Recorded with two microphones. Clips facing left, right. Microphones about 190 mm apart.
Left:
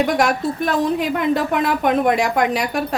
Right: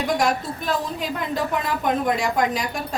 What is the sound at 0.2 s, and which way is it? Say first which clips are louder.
Speech: left 4 dB; 70° left (ahead or behind).